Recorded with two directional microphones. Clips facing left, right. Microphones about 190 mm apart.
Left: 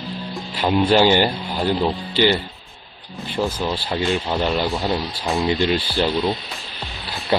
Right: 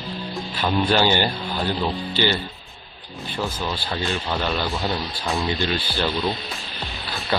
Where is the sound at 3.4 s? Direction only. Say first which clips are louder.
Left 5 dB; 20° left (ahead or behind).